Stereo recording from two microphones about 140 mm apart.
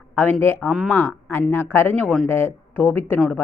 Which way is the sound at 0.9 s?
15° left (ahead or behind).